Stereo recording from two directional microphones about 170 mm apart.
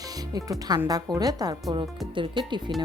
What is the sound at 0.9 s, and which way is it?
Speech, 20° right (ahead or behind).